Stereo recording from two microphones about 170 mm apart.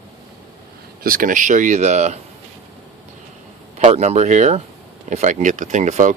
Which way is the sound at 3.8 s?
40° right (ahead or behind).